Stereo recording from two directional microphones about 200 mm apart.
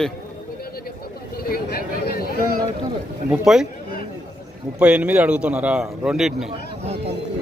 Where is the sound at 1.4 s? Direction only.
50° left (ahead or behind).